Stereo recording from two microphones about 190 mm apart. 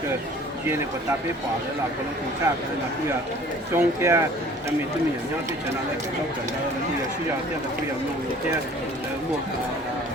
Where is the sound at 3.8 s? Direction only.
15° right (ahead or behind).